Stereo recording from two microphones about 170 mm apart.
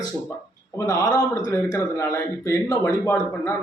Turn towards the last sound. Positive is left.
turn(degrees=15)  # may be behind; listen again after turning